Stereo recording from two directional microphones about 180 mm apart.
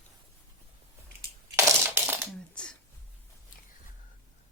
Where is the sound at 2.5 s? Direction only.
5° left (ahead or behind).